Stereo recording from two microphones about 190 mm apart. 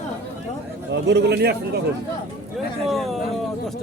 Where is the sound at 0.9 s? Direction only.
65° right (ahead or behind).